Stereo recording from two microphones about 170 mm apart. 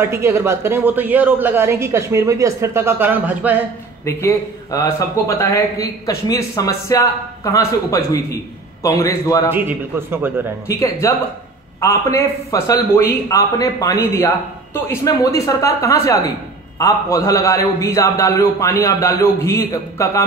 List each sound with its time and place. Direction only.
0.0 s speech: 15° right (ahead or behind)
4.0 s a man's voice: 15° left (ahead or behind)
9.7 s speech: 15° right (ahead or behind)
10.7 s a man's voice: 20° left (ahead or behind)